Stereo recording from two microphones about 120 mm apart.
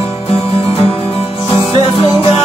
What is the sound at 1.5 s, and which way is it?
Music, 55° left (ahead or behind).